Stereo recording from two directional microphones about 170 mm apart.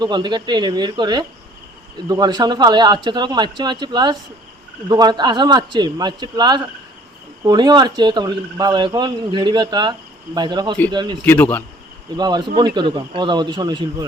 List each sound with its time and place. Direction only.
0.0 s speech: 25° right (ahead or behind)
11.3 s speech: 10° left (ahead or behind)
12.1 s speech: 25° right (ahead or behind)